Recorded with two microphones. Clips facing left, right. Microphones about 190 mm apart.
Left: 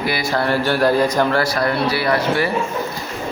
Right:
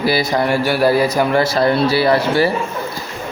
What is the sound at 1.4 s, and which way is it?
A man's voice, 25° right (ahead or behind).